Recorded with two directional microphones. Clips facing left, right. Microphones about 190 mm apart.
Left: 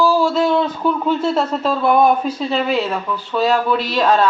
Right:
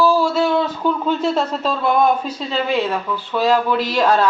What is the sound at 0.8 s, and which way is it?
A woman's voice, 5° left (ahead or behind).